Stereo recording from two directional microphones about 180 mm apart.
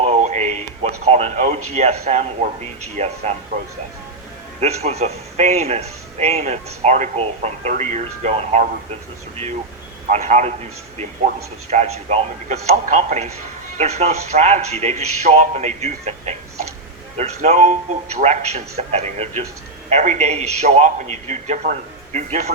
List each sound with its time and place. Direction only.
0.0 s speech: 40° right (ahead or behind)
4.6 s a man's voice: 35° right (ahead or behind)
10.1 s a man's voice: 40° right (ahead or behind)